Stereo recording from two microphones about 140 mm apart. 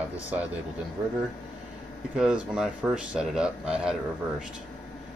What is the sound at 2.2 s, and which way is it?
A man's voice, 5° right (ahead or behind).